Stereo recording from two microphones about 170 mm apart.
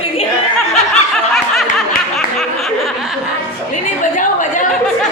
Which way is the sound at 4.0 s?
50° left (ahead or behind).